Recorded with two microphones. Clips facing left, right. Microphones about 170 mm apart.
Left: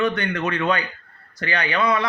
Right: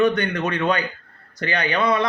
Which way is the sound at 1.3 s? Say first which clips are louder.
Right 1 dB; 20° right (ahead or behind).